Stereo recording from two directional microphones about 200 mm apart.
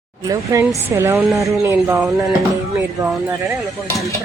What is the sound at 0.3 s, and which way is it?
Speech, 15° right (ahead or behind).